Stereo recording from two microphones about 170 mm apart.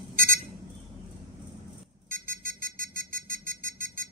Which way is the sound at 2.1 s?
55° right (ahead or behind).